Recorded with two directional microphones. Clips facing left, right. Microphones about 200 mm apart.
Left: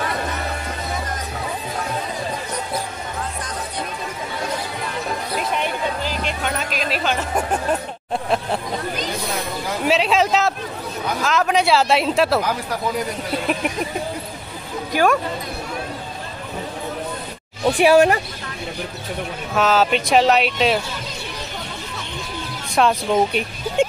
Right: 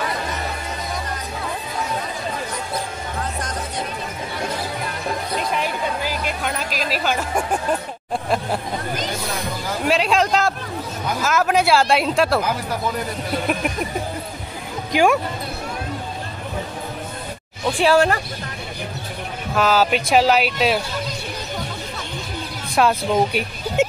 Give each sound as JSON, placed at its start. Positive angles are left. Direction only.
{"t": 6.0, "sound": "music", "side_deg": -5}
{"t": 9.8, "sound": "a sound", "side_deg": 0}
{"t": 11.1, "sound": "speech", "side_deg": -5}
{"t": 14.9, "sound": "speech", "side_deg": -15}
{"t": 17.7, "sound": "speech", "side_deg": 15}
{"t": 19.5, "sound": "speech", "side_deg": 0}
{"t": 22.8, "sound": "speech", "side_deg": -5}